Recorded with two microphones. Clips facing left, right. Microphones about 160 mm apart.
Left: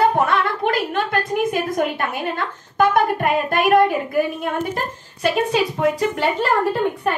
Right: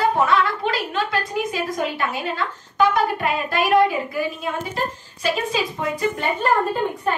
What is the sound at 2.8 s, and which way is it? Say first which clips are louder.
Child singing: left 2 dB; 50° left (ahead or behind).